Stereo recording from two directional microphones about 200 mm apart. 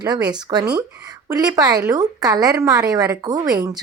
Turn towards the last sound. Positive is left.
turn(degrees=-20)  # may be behind; listen again after turning